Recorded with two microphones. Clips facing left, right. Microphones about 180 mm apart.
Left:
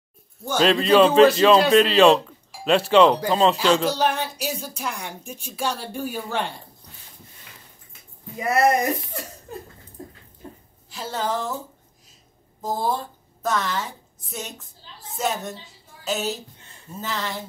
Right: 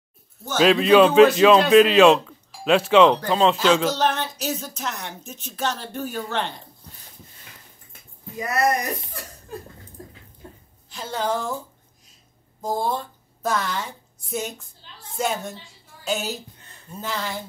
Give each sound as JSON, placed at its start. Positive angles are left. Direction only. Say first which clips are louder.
{"t": 0.6, "sound": "a man's voice", "louder": "right 2 dB", "side_deg": -5}
{"t": 3.9, "sound": "speech", "louder": "even", "side_deg": 10}
{"t": 8.4, "sound": "speech", "louder": "left 3 dB", "side_deg": 25}
{"t": 10.9, "sound": "a man's voice", "louder": "right 1 dB", "side_deg": 5}
{"t": 13.4, "sound": "a man's voice", "louder": "even", "side_deg": 0}
{"t": 15.1, "sound": "a man's voice", "louder": "right 1 dB", "side_deg": 0}